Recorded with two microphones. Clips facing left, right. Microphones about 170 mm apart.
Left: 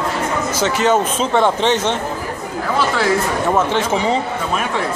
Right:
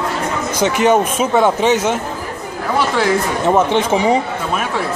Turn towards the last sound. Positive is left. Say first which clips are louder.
# right 3 dB
turn(degrees=-15)  # may be behind; listen again after turning